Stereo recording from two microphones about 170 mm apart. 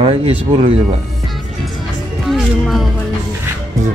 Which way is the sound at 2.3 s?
Centre (ahead or behind).